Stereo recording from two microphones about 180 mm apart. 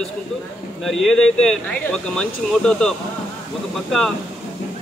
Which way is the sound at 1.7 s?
5° left (ahead or behind).